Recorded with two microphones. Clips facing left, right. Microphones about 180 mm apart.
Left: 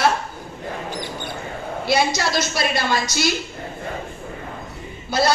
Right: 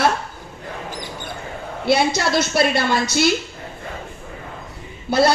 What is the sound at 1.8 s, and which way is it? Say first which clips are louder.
A woman's voice: right 3 dB; 60° right (ahead or behind).